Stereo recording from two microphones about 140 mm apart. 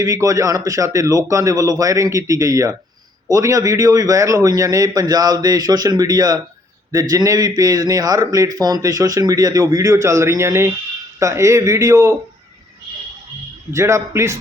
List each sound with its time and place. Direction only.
0.0 s a man's voice: 25° right (ahead or behind)
13.7 s a man's voice: 20° right (ahead or behind)